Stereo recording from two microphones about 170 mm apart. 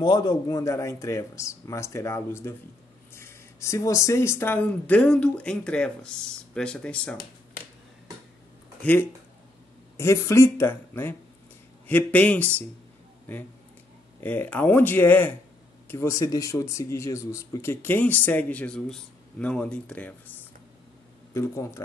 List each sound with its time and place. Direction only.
0.0 s speech: 25° left (ahead or behind); by 7.2 s 5° left (ahead or behind)
9.9 s speech: 15° left (ahead or behind)
14.2 s speech: 10° left (ahead or behind)
21.3 s speech: 15° left (ahead or behind)